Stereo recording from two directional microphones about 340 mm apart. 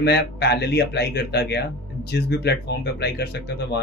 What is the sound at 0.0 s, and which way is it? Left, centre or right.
Speech, left.